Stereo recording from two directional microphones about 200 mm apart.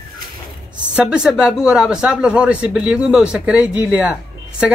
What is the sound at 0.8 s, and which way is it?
A man's voice, 5° right (ahead or behind).